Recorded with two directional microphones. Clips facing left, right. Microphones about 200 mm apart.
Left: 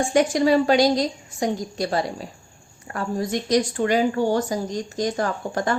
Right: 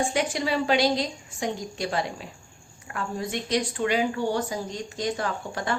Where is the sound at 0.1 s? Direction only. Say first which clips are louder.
Left 8 dB; 45° left (ahead or behind).